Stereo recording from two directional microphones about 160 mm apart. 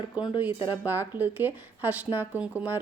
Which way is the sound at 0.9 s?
10° right (ahead or behind).